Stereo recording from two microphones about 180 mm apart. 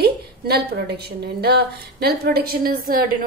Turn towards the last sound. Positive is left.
turn(degrees=-50)  # may be behind; listen again after turning